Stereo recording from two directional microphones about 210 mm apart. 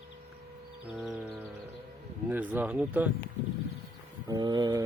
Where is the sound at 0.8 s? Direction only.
Centre (ahead or behind).